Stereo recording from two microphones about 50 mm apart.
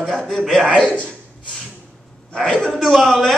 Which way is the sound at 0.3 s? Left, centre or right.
Centre.